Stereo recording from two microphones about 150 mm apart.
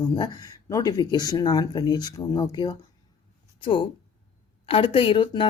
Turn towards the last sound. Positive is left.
turn(degrees=35)  # may be behind; listen again after turning